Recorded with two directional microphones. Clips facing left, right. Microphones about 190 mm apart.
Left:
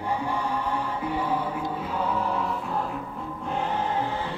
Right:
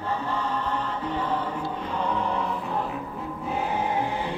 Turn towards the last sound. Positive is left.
turn(degrees=-15)  # may be behind; listen again after turning